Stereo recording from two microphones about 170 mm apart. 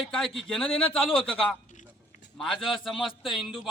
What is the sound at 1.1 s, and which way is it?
Speech, 30° left (ahead or behind).